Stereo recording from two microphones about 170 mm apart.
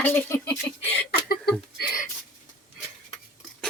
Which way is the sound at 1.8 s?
55° left (ahead or behind).